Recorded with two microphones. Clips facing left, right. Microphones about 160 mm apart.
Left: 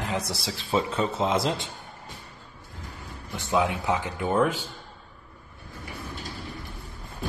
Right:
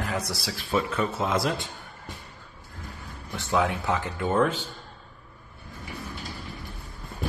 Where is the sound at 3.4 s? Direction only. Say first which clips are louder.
Even; 20° left (ahead or behind).